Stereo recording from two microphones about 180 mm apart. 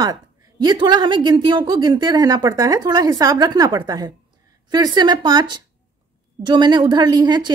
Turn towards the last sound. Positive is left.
turn(degrees=-25)  # may be behind; listen again after turning